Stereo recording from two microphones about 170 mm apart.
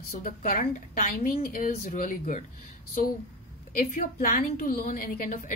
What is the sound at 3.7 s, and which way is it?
A woman's voice, 55° left (ahead or behind).